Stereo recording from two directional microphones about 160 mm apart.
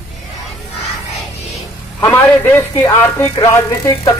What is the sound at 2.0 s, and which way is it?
A man's voice, 10° left (ahead or behind).